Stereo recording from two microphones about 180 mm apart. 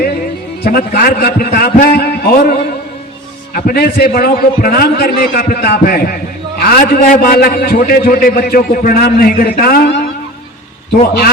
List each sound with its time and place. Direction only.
0.6 s a man's voice: 55° left (ahead or behind)